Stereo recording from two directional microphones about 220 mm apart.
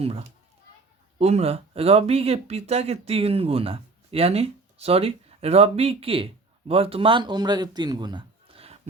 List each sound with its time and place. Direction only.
0.0 s a child's voice: 25° right (ahead or behind)